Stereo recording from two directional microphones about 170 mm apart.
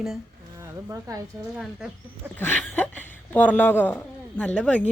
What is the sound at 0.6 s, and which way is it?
Speech, 20° right (ahead or behind).